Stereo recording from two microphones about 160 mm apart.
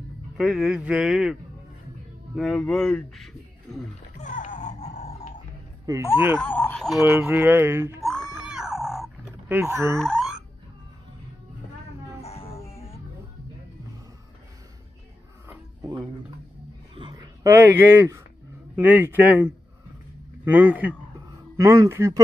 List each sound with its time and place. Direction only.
0.4 s speech: centre (ahead or behind)
4.2 s music: 55° left (ahead or behind)
5.9 s speech: 20° right (ahead or behind)
6.4 s speech: 10° left (ahead or behind)
7.0 s speech: 15° right (ahead or behind)
8.0 s music: centre (ahead or behind)
9.5 s speech: 15° right (ahead or behind)
9.9 s boing: centre (ahead or behind)
12.2 s music: 40° left (ahead or behind)
16.9 s a sound: 25° right (ahead or behind)
18.8 s speech: 10° right (ahead or behind)